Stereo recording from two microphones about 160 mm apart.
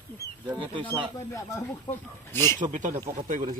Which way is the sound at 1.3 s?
20° left (ahead or behind).